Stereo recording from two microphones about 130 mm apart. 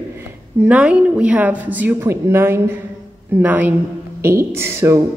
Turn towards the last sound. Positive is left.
turn(degrees=-20)  # may be behind; listen again after turning